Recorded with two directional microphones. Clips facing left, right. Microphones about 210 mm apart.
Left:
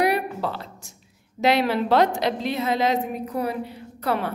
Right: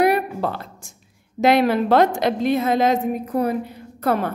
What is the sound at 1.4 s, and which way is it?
A woman's voice, 50° right (ahead or behind).